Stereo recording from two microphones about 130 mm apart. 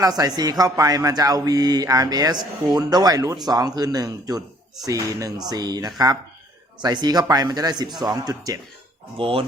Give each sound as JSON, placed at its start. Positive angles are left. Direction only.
{"t": 0.0, "sound": "speech", "side_deg": -30}
{"t": 9.1, "sound": "speech", "side_deg": -45}